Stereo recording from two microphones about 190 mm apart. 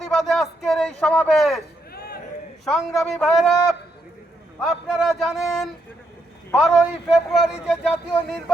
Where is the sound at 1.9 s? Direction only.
50° left (ahead or behind).